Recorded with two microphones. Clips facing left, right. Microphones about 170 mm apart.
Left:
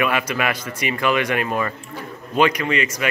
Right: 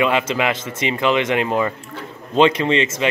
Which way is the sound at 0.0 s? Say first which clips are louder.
Right 3 dB; 20° right (ahead or behind).